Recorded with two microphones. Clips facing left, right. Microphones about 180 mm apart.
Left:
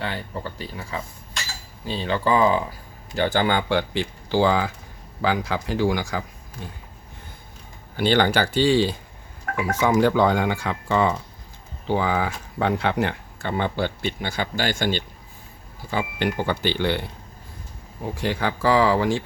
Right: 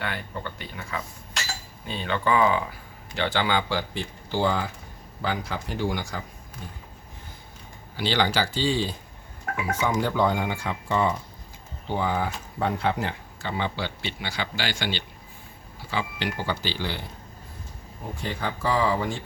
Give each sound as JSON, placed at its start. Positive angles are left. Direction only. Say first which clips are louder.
{"t": 0.0, "sound": "speech", "louder": "left 3 dB", "side_deg": 30}
{"t": 7.9, "sound": "speech", "louder": "left 5 dB", "side_deg": 55}
{"t": 18.2, "sound": "speech", "louder": "left 6 dB", "side_deg": 90}